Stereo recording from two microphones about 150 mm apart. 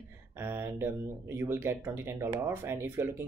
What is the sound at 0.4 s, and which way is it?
Speech, 15° right (ahead or behind).